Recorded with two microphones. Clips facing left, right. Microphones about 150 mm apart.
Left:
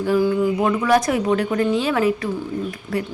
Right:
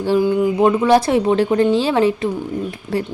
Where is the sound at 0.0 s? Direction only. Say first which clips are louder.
Right 2 dB; 25° right (ahead or behind).